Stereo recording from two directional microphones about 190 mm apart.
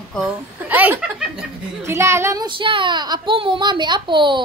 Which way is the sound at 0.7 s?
10° right (ahead or behind).